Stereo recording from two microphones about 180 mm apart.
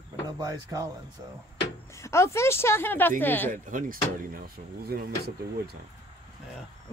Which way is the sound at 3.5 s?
50° right (ahead or behind).